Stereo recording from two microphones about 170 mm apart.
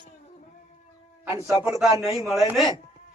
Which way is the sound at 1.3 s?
15° right (ahead or behind).